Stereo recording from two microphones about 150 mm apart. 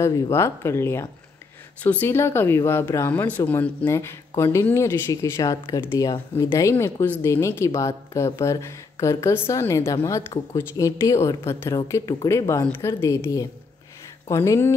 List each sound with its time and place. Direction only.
0.0 s speech: 20° left (ahead or behind)